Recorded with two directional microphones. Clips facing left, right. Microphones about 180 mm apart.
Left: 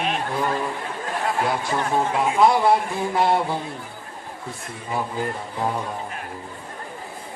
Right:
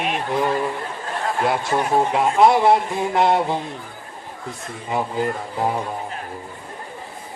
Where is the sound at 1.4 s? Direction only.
20° right (ahead or behind).